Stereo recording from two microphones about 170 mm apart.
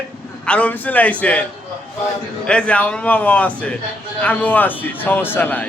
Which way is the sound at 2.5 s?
5° left (ahead or behind).